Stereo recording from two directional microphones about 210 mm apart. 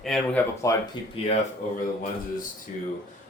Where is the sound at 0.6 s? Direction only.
15° left (ahead or behind).